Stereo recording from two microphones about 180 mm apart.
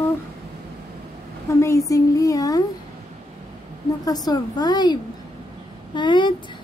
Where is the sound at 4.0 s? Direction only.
20° left (ahead or behind).